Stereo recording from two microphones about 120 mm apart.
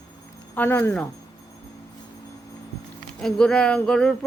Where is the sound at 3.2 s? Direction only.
5° left (ahead or behind).